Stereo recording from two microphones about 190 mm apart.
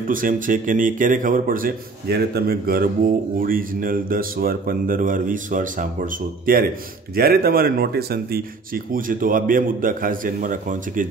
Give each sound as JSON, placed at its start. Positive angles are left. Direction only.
{"t": 0.1, "sound": "speech", "side_deg": -45}
{"t": 7.2, "sound": "speech", "side_deg": -50}